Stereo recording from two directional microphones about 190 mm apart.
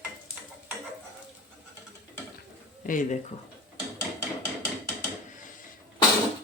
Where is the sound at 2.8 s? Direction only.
45° left (ahead or behind).